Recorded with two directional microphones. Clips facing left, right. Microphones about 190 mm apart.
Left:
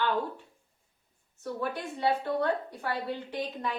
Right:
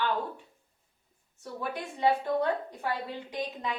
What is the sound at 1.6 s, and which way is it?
A woman's voice, 10° right (ahead or behind).